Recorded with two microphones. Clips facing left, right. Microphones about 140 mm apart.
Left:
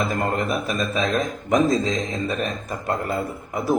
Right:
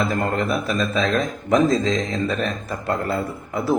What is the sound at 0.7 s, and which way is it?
Speech, 15° left (ahead or behind).